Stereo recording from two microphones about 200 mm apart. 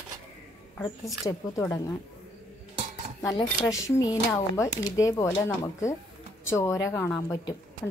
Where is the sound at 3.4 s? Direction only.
15° left (ahead or behind).